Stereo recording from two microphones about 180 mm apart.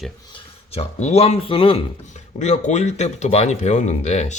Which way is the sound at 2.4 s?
40° left (ahead or behind).